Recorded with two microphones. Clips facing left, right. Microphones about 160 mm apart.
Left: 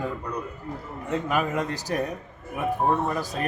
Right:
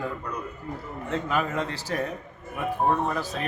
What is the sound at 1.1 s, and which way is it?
Speech, 10° left (ahead or behind).